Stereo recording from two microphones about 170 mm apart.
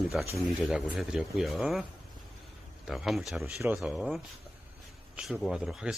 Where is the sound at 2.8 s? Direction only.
Centre (ahead or behind).